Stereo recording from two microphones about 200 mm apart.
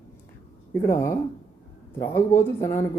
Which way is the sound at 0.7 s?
15° left (ahead or behind).